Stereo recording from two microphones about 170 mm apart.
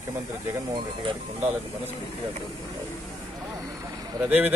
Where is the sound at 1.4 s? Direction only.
10° right (ahead or behind).